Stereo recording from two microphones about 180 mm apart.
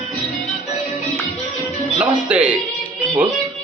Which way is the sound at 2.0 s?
5° right (ahead or behind).